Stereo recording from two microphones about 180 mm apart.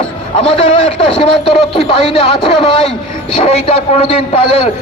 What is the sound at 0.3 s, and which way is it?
A man's voice, 35° left (ahead or behind).